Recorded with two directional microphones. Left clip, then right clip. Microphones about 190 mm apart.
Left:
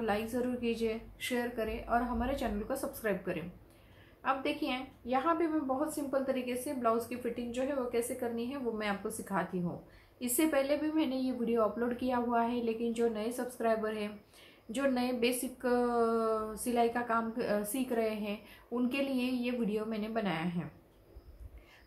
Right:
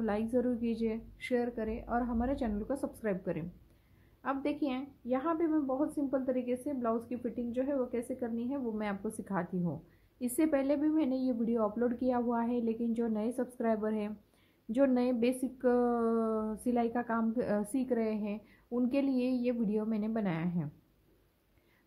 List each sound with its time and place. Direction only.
0.0 s a woman's voice: 50° right (ahead or behind)